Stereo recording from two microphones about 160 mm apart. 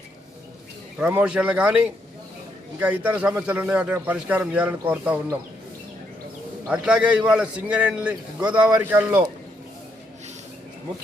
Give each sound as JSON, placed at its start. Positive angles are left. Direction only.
{"t": 0.9, "sound": "speech", "side_deg": -10}
{"t": 6.7, "sound": "speech", "side_deg": -5}